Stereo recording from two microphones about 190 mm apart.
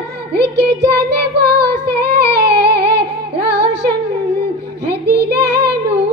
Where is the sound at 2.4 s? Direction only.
60° right (ahead or behind).